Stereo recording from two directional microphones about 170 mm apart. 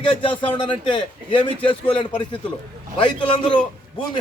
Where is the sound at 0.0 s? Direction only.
30° left (ahead or behind).